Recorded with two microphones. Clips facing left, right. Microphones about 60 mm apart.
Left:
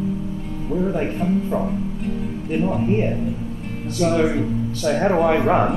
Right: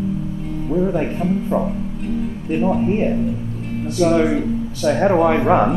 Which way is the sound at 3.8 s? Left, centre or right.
Centre.